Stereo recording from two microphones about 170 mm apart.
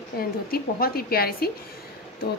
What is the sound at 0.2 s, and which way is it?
A woman's voice, 60° left (ahead or behind).